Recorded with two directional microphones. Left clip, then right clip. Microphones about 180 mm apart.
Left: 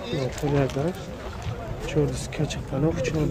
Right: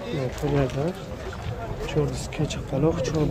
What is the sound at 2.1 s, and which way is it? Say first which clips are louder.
Speech: even; 15° left (ahead or behind).